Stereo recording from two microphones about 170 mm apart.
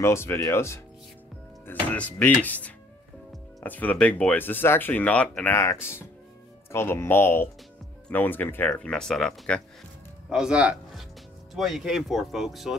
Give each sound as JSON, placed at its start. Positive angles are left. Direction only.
{"t": 0.0, "sound": "speech", "side_deg": 15}